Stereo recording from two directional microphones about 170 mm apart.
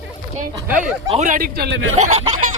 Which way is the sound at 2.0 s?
40° right (ahead or behind).